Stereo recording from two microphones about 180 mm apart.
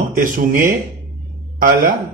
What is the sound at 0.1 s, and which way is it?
Speech, 50° right (ahead or behind).